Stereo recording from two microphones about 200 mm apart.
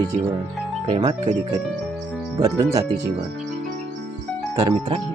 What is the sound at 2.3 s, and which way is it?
Speech, 15° right (ahead or behind).